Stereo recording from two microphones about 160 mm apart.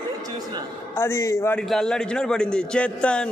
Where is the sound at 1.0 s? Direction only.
15° left (ahead or behind).